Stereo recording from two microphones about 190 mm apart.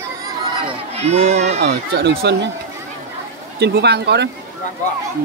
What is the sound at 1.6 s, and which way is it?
Speech, 60° right (ahead or behind).